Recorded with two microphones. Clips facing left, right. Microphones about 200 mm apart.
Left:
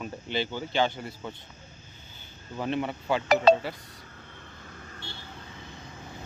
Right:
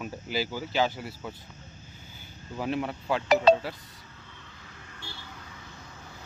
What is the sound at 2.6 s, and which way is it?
Speech, 5° right (ahead or behind).